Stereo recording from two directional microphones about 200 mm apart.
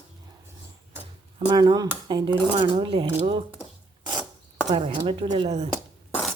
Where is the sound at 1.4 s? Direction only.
25° right (ahead or behind).